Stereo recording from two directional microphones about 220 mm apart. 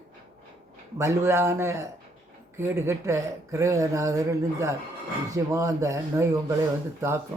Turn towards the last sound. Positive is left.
turn(degrees=-10)  # may be behind; listen again after turning